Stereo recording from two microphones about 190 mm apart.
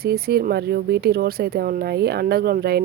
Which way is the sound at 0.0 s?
55° right (ahead or behind).